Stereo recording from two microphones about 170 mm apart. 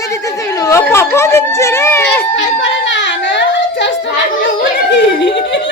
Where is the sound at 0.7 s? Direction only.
15° left (ahead or behind).